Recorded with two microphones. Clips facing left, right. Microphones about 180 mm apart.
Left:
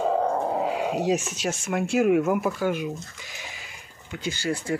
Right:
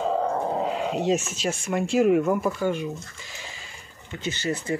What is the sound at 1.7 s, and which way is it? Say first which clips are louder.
Speech: right 1 dB; centre (ahead or behind).